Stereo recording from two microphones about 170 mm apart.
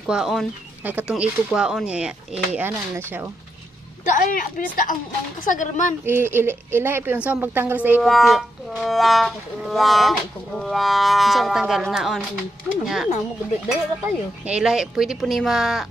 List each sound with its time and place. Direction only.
0.0 s speech: centre (ahead or behind)
4.1 s a woman's voice: 55° left (ahead or behind)
6.0 s a woman's voice: 15° right (ahead or behind)